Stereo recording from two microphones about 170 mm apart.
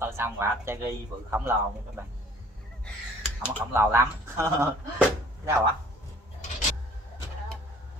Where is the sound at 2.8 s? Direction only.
5° right (ahead or behind).